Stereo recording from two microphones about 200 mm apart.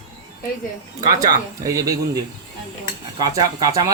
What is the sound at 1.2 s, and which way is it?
Speech, 15° right (ahead or behind).